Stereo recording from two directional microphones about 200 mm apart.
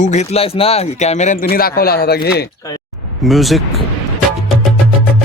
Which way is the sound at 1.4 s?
50° left (ahead or behind).